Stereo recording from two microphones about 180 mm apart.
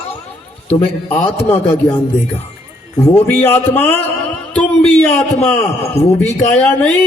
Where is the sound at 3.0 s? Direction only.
10° left (ahead or behind).